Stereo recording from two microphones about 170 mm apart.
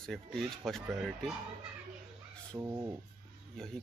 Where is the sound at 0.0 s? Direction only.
Centre (ahead or behind).